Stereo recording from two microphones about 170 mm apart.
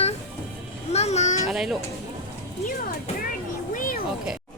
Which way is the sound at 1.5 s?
Centre (ahead or behind).